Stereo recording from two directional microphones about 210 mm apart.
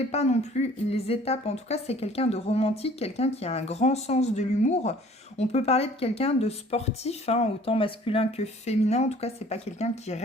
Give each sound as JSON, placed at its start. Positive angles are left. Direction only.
{"t": 0.0, "sound": "a woman's voice", "side_deg": 30}